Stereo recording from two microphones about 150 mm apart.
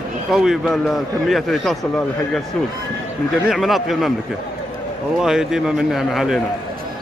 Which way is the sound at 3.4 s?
Centre (ahead or behind).